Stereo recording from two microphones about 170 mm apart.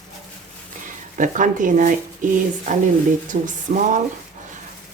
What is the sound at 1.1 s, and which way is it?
Speech, 50° right (ahead or behind).